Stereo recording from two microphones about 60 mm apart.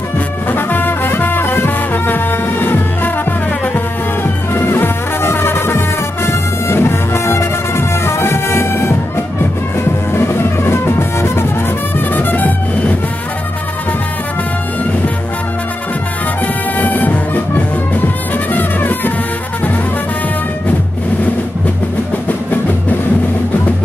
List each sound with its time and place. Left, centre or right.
0.5 s music: left
10.1 s music: left
12.1 s music: left
16.7 s music: left